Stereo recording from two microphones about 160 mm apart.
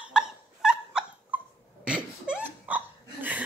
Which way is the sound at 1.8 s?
5° right (ahead or behind).